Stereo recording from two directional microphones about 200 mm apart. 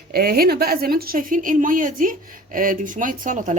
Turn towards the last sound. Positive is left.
turn(degrees=-40)  # may be behind; listen again after turning